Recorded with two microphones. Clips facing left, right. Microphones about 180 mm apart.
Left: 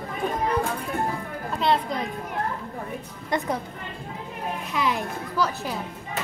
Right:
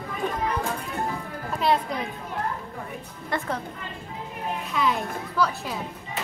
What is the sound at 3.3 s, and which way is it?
Speech, 20° left (ahead or behind).